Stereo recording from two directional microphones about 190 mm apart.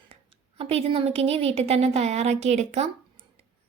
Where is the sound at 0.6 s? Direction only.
30° right (ahead or behind).